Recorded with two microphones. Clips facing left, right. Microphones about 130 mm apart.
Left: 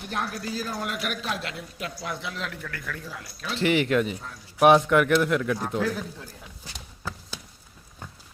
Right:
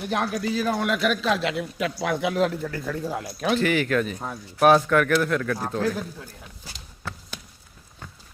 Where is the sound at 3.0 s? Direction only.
50° right (ahead or behind).